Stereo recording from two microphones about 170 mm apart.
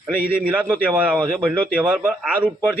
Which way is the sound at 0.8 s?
10° right (ahead or behind).